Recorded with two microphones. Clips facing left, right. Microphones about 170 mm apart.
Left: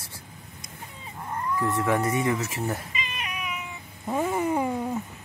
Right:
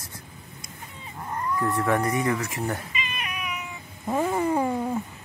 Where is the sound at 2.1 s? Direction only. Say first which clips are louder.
Even; 25° left (ahead or behind).